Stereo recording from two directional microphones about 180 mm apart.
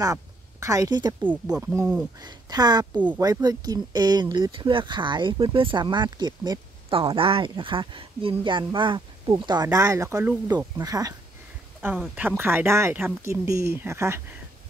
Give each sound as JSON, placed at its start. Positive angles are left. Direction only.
{"t": 0.0, "sound": "speech", "side_deg": -20}
{"t": 1.2, "sound": "speech", "side_deg": -10}
{"t": 2.2, "sound": "speech", "side_deg": -20}
{"t": 2.9, "sound": "speech", "side_deg": -10}
{"t": 3.2, "sound": "speech", "side_deg": -20}